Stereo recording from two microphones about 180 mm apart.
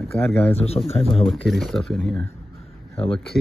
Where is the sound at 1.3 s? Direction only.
Centre (ahead or behind).